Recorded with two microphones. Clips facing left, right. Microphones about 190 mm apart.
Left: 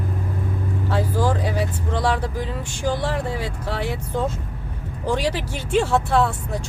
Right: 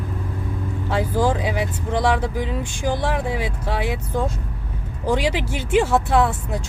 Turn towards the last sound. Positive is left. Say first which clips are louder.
# right 1 dB
turn(degrees=-15)  # may be behind; listen again after turning